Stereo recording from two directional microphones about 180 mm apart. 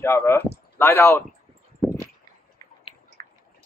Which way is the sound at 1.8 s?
Centre (ahead or behind).